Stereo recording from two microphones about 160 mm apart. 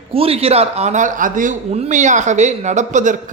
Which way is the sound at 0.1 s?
35° right (ahead or behind).